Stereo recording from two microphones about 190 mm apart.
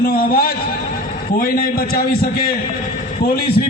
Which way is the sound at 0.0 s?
50° left (ahead or behind).